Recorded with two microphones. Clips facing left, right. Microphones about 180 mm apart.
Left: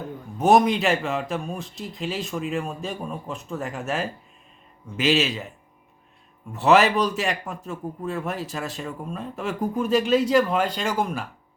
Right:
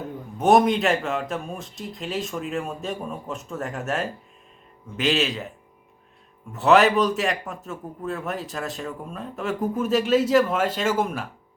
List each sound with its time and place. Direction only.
0.3 s a man's voice: centre (ahead or behind)